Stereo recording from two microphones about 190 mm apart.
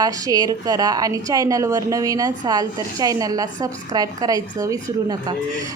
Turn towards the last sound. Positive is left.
turn(degrees=-20)  # may be behind; listen again after turning